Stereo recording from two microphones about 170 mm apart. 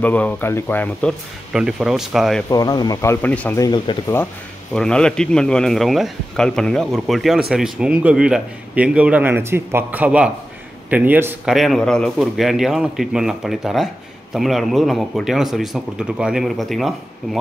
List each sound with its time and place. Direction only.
0.0 s speech: 10° left (ahead or behind)
1.5 s a man's voice: 5° right (ahead or behind)
2.5 s speech: 20° left (ahead or behind)
4.7 s a man's voice: 5° left (ahead or behind); by 11.5 s 10° right (ahead or behind)
11.5 s a man's voice: centre (ahead or behind)